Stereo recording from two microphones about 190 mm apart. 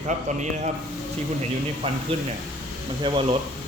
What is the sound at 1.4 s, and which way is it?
Speech, 30° right (ahead or behind).